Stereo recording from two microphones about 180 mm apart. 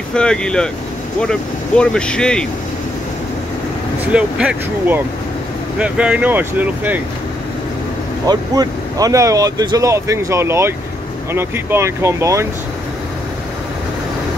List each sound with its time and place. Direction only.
0.1 s speech: 5° left (ahead or behind)
4.1 s speech: 5° right (ahead or behind)
8.3 s speech: 20° right (ahead or behind)